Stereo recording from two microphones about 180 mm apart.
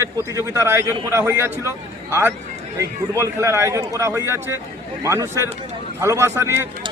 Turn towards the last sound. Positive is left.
turn(degrees=-15)  # may be behind; listen again after turning